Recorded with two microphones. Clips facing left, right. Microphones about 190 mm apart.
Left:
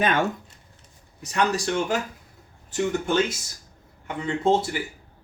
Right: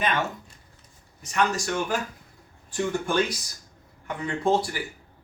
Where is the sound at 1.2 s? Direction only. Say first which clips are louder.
Left 1 dB; 35° left (ahead or behind).